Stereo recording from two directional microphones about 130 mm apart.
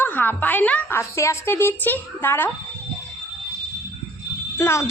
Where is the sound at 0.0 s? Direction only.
15° left (ahead or behind).